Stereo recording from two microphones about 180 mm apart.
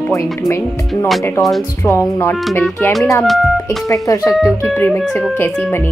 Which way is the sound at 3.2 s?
Centre (ahead or behind).